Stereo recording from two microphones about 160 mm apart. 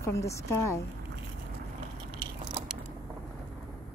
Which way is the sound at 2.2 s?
25° right (ahead or behind).